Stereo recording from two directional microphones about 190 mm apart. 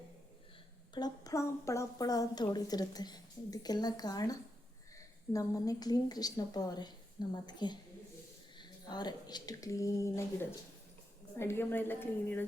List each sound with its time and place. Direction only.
0.9 s a woman's voice: 20° left (ahead or behind)
11.3 s a woman's voice: 10° left (ahead or behind)